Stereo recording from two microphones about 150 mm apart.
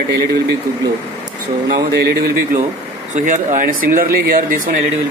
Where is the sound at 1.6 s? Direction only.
90° right.